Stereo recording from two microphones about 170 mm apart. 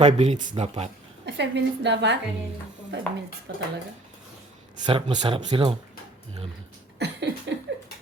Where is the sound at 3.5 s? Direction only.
80° right.